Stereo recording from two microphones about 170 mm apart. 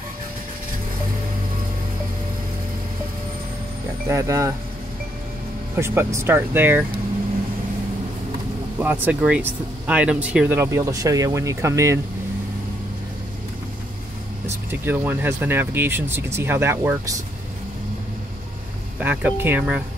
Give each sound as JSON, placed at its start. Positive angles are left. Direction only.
{"t": 4.1, "sound": "speech", "side_deg": -20}
{"t": 5.8, "sound": "speech", "side_deg": -15}
{"t": 8.7, "sound": "speech", "side_deg": -10}
{"t": 14.7, "sound": "speech", "side_deg": -10}
{"t": 18.9, "sound": "speech", "side_deg": -10}